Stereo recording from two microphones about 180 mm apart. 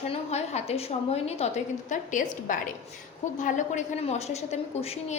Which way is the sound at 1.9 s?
45° left (ahead or behind).